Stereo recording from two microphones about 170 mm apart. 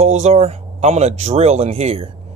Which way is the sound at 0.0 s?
40° right (ahead or behind).